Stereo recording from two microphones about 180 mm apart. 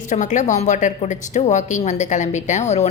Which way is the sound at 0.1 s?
45° left (ahead or behind).